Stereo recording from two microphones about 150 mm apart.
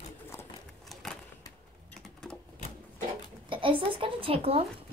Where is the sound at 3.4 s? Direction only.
35° right (ahead or behind).